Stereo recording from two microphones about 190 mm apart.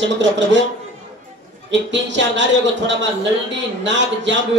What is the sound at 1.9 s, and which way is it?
A man's voice, 70° right (ahead or behind).